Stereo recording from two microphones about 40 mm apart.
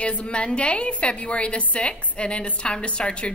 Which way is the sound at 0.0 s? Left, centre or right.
Left.